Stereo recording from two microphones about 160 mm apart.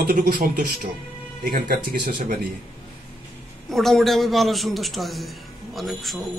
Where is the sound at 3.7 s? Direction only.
Centre (ahead or behind).